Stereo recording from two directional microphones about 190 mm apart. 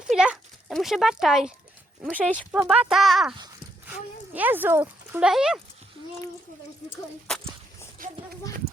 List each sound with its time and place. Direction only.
0.1 s a sound: centre (ahead or behind)
2.2 s speech: 5° left (ahead or behind)
2.5 s speech: 5° right (ahead or behind)
4.4 s speech: 10° right (ahead or behind)
8.0 s speech: 45° right (ahead or behind)
8.6 s livestock: 55° right (ahead or behind)